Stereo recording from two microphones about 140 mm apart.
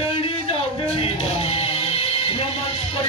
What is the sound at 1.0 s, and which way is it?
Music, 40° left (ahead or behind).